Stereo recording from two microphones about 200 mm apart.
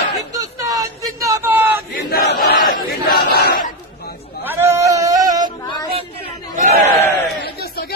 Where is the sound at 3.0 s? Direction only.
50° left (ahead or behind).